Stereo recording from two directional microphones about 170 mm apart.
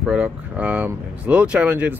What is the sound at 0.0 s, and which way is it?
Speech, 5° right (ahead or behind).